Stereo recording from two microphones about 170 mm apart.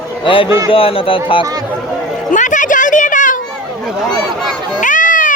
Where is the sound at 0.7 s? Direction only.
35° left (ahead or behind).